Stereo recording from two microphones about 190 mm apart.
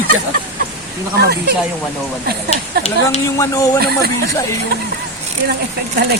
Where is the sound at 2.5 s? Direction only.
35° left (ahead or behind).